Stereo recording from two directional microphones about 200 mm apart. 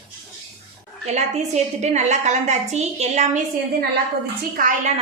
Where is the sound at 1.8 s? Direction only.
35° right (ahead or behind).